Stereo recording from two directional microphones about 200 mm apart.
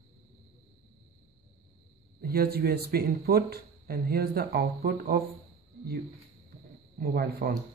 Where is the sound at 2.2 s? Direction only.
50° right (ahead or behind).